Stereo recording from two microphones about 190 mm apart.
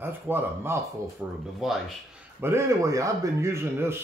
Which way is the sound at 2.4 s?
15° right (ahead or behind).